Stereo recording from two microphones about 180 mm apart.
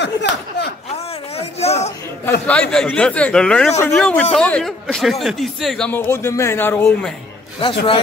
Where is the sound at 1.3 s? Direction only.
35° left (ahead or behind).